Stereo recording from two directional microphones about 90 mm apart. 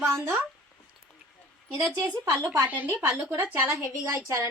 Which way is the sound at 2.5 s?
20° right (ahead or behind).